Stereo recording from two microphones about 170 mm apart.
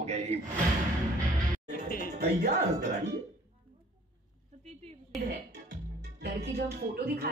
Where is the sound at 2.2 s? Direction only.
70° right (ahead or behind).